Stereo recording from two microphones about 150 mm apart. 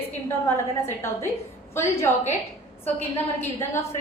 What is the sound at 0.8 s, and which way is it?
A woman's voice, 15° left (ahead or behind).